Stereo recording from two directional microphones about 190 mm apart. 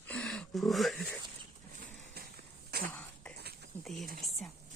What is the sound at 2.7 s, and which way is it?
Cough, 50° right (ahead or behind).